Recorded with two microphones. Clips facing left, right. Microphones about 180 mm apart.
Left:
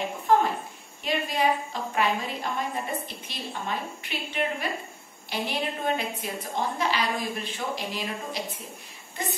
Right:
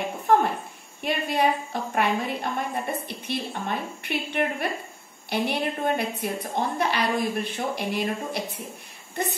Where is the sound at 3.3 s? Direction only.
55° right (ahead or behind).